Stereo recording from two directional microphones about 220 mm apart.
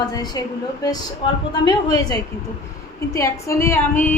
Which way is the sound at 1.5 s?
20° left (ahead or behind).